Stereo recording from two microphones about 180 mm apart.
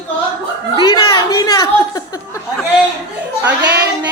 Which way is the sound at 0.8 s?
20° left (ahead or behind).